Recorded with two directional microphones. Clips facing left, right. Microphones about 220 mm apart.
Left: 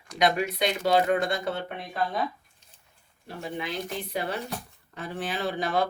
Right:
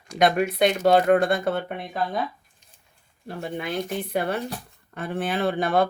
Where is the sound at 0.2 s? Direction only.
50° right (ahead or behind).